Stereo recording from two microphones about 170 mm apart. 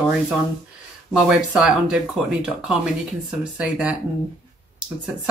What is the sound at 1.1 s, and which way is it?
Speech, 5° right (ahead or behind).